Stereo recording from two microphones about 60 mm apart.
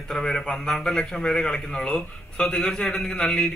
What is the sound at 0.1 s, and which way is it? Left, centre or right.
A man's voice, centre.